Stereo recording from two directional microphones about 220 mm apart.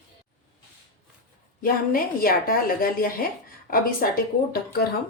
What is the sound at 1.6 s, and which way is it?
A woman's voice, 40° left (ahead or behind).